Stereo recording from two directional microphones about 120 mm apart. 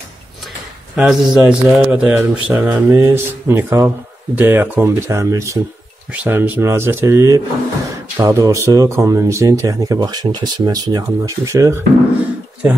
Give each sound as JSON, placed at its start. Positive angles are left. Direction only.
{"t": 0.9, "sound": "a man's voice", "side_deg": -5}
{"t": 6.1, "sound": "speech", "side_deg": -15}